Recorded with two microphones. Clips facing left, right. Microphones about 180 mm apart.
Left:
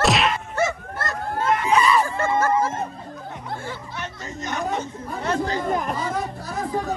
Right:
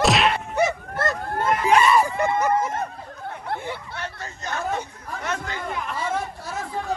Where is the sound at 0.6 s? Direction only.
20° right (ahead or behind).